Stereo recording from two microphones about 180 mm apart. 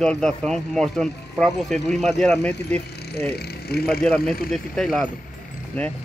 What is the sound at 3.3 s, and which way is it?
Speech, 60° left (ahead or behind).